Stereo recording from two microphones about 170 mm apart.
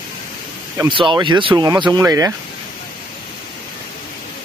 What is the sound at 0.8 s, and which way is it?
Speech, 30° right (ahead or behind).